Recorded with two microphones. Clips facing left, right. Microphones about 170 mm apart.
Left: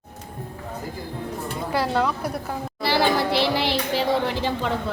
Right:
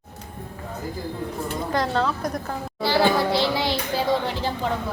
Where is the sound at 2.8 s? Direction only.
70° left (ahead or behind).